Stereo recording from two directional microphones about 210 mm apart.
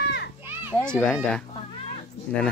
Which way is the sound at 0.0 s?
55° left (ahead or behind).